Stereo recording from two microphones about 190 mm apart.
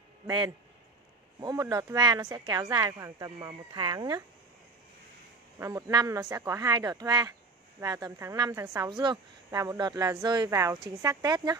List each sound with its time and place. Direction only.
1.4 s a woman's voice: 20° right (ahead or behind)
5.6 s a woman's voice: 15° right (ahead or behind)